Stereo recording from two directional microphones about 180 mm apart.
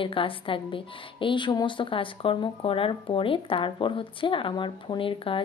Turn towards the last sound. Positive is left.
turn(degrees=30)  # may be behind; listen again after turning